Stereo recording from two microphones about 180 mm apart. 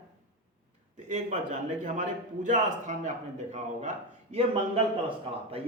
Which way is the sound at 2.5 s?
45° right (ahead or behind).